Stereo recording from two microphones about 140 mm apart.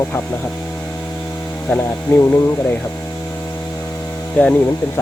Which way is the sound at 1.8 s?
20° left (ahead or behind).